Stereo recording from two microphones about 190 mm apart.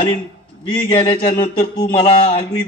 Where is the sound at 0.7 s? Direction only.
25° left (ahead or behind).